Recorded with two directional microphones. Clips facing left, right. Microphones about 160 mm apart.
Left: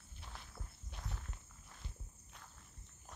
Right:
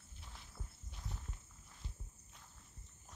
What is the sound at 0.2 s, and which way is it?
Walk, 75° left (ahead or behind).